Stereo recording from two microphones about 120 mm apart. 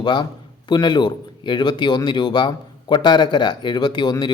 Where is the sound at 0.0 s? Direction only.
40° left (ahead or behind).